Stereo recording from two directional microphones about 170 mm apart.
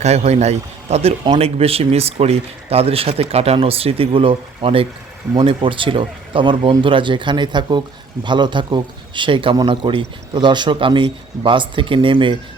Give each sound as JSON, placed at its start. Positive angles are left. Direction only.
{"t": 0.0, "sound": "a man's voice", "side_deg": -40}